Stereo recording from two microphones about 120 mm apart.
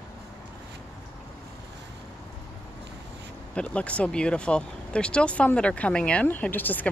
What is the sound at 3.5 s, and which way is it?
Speech, 10° left (ahead or behind).